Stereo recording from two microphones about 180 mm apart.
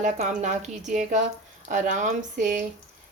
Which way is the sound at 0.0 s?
40° right (ahead or behind).